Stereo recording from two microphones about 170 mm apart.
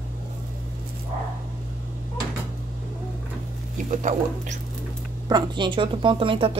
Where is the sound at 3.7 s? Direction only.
45° right (ahead or behind).